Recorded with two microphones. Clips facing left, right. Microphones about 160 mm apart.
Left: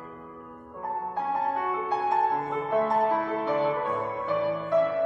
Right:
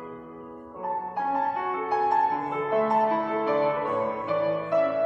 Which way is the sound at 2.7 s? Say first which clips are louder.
Right 1 dB; 10° right (ahead or behind).